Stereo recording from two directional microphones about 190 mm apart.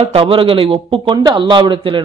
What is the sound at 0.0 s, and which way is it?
A man's voice, 30° right (ahead or behind).